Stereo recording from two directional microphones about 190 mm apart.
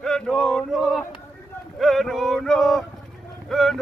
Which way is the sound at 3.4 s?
Centre (ahead or behind).